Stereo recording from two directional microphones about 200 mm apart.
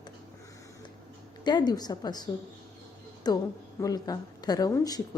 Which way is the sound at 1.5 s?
20° left (ahead or behind).